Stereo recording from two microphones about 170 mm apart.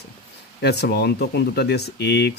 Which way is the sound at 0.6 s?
75° left (ahead or behind).